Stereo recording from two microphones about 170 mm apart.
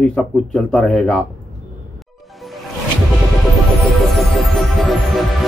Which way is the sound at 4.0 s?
Centre (ahead or behind).